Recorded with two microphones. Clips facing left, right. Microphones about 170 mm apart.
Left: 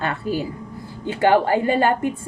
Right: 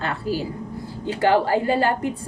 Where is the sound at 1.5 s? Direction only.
20° left (ahead or behind).